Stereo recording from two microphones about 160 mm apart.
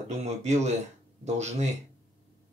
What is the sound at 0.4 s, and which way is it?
Speech, 45° right (ahead or behind).